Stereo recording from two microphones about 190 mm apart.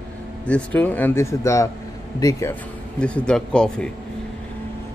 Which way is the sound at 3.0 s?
5° left (ahead or behind).